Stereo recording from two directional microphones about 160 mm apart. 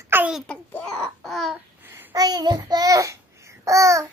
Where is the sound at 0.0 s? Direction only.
10° right (ahead or behind).